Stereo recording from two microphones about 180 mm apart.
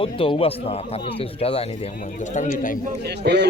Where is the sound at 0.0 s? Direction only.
30° left (ahead or behind).